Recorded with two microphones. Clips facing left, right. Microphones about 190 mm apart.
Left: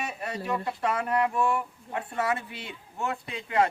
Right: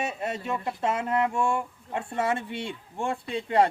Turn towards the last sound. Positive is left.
turn(degrees=-30)  # may be behind; listen again after turning